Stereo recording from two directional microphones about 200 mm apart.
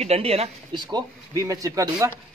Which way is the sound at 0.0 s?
30° right (ahead or behind).